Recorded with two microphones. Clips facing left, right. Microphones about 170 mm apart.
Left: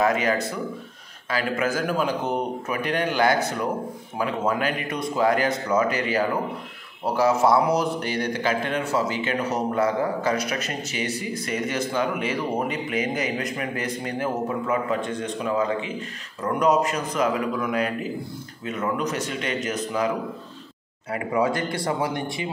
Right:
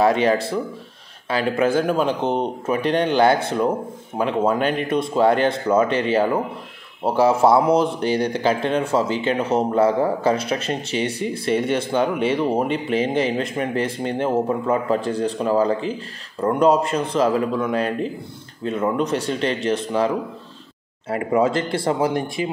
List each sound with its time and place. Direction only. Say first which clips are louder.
0.0 s speech: right 5 dB; 30° right (ahead or behind)
21.1 s speech: right 4 dB; 25° right (ahead or behind)
22.1 s speech: right 5 dB; 25° left (ahead or behind)